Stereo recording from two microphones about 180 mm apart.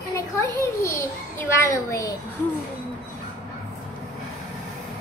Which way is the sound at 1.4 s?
15° left (ahead or behind).